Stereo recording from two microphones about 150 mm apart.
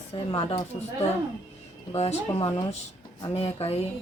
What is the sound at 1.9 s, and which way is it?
A woman's voice, 40° left (ahead or behind).